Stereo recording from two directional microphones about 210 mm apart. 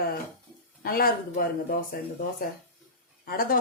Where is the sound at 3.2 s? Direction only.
45° left (ahead or behind).